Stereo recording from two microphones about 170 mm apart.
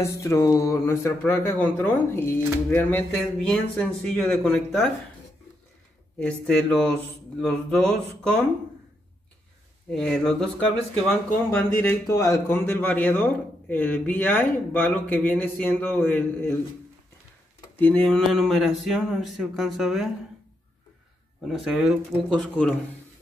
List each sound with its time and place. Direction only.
0.0 s a man's voice: 15° left (ahead or behind)
6.1 s a man's voice: 5° left (ahead or behind)
9.8 s a man's voice: 5° left (ahead or behind)
17.7 s speech: 10° left (ahead or behind)
21.5 s speech: centre (ahead or behind)